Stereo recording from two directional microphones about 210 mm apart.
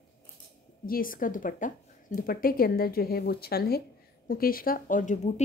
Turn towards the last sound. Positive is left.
turn(degrees=35)  # may be behind; listen again after turning